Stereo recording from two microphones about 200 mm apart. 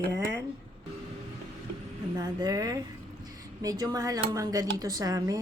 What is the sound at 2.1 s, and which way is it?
A woman's voice, 20° right (ahead or behind).